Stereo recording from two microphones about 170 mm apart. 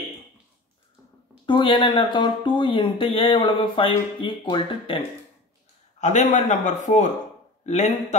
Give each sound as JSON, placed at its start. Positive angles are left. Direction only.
{"t": 1.4, "sound": "speech", "side_deg": 30}
{"t": 5.9, "sound": "a man's voice", "side_deg": 45}